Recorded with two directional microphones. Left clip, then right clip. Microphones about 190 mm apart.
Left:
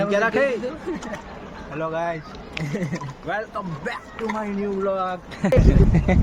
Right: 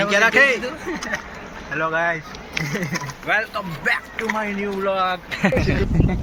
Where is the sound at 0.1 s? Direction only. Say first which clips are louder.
Right 7 dB; 35° left (ahead or behind).